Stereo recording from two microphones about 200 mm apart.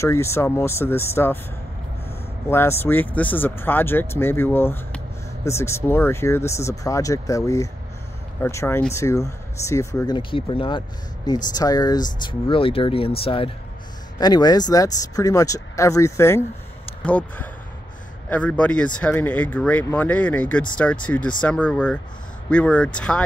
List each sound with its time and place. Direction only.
0.0 s speech: 15° left (ahead or behind)
2.5 s speech: 10° left (ahead or behind)